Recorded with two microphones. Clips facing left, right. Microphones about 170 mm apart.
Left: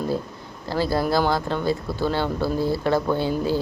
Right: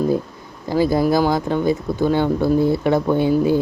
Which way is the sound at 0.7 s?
15° right (ahead or behind).